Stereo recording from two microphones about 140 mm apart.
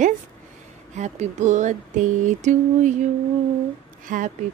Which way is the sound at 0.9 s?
55° right (ahead or behind).